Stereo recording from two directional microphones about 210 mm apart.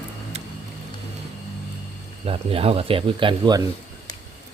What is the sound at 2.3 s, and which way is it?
Speech, 25° right (ahead or behind).